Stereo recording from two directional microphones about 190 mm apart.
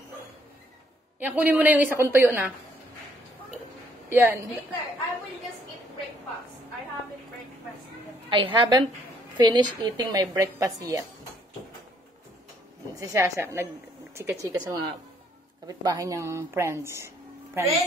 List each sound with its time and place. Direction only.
1.2 s speech: 10° right (ahead or behind)
4.1 s speech: 10° right (ahead or behind)
8.3 s a woman's voice: 25° right (ahead or behind)
12.9 s speech: 15° right (ahead or behind)